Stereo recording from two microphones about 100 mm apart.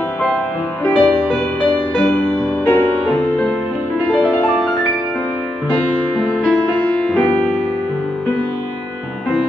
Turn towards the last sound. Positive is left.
turn(degrees=15)  # may be behind; listen again after turning